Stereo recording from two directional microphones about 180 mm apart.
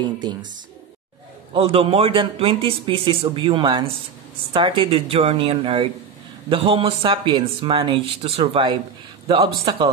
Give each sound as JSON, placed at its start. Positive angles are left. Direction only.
{"t": 0.0, "sound": "speech", "side_deg": -25}
{"t": 1.5, "sound": "speech", "side_deg": -30}